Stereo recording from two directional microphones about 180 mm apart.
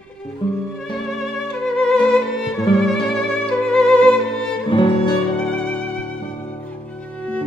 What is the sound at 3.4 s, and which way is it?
Music, 5° left (ahead or behind).